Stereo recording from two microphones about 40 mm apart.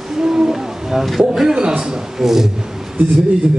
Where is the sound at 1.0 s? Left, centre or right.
Centre.